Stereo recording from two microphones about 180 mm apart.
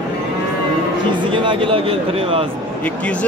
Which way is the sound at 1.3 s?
30° right (ahead or behind).